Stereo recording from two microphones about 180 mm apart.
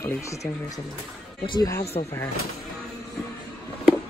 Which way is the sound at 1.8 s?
35° left (ahead or behind).